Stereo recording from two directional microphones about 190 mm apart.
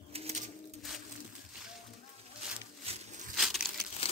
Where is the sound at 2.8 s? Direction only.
30° right (ahead or behind).